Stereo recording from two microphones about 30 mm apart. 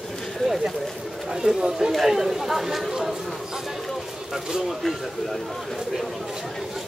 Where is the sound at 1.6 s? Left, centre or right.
Right.